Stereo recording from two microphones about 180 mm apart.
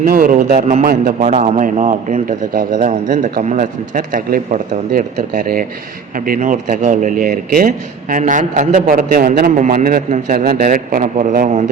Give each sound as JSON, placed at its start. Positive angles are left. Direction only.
{"t": 0.0, "sound": "speech", "side_deg": -50}